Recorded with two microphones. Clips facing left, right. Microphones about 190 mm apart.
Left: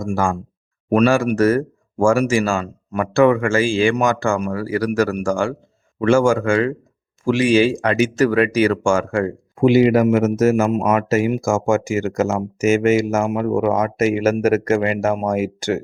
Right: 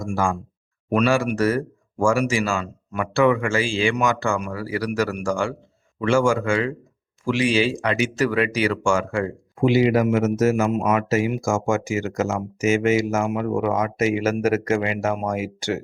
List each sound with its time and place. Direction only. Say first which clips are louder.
0.0 s speech: left 3 dB; 50° left (ahead or behind)